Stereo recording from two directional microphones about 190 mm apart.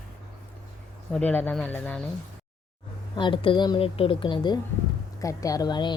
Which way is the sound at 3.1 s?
25° left (ahead or behind).